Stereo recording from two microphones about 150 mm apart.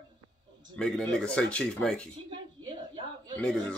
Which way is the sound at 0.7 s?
5° left (ahead or behind).